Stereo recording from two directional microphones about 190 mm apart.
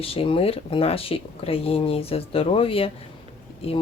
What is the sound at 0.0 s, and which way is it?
Speech, 30° left (ahead or behind).